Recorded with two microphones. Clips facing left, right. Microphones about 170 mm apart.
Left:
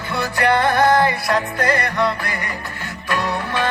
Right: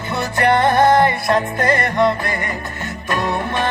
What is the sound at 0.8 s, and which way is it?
Music, 20° right (ahead or behind).